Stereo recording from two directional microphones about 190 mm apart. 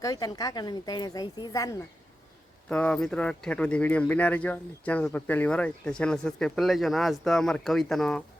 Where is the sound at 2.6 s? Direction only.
5° left (ahead or behind).